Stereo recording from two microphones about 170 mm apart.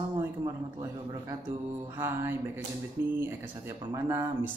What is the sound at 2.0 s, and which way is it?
Speech, 15° right (ahead or behind).